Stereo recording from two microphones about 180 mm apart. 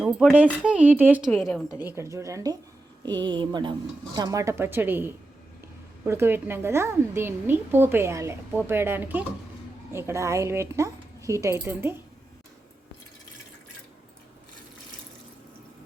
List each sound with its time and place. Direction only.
0.0 s a woman's voice: 5° right (ahead or behind)
1.3 s a woman's voice: centre (ahead or behind)
1.8 s a woman's voice: 15° right (ahead or behind)